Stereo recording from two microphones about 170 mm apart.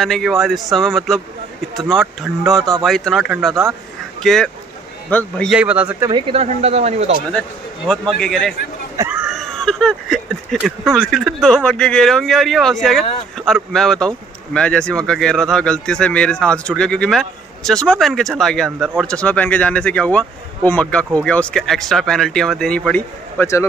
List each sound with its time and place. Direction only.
0.0 s speech: centre (ahead or behind)
5.5 s speech: 5° right (ahead or behind)
6.0 s speech: 30° right (ahead or behind)
7.8 s speech: 5° left (ahead or behind)